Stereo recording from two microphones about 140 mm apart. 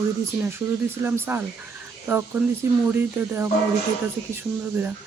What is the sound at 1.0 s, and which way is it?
Speech, 15° right (ahead or behind).